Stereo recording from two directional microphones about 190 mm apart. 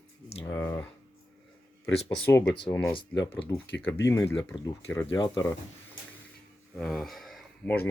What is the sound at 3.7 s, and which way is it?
Speech, 70° left (ahead or behind).